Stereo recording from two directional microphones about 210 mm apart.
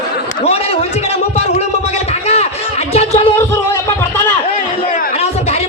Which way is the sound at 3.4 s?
10° left (ahead or behind).